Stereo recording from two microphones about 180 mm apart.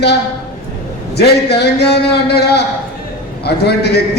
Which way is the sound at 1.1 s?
65° left (ahead or behind).